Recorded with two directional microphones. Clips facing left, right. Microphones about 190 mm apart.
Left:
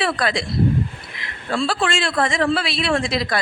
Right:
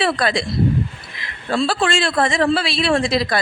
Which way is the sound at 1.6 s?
35° right (ahead or behind).